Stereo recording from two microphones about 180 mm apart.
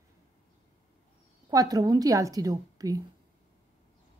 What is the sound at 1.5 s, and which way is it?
A woman's voice, 20° right (ahead or behind).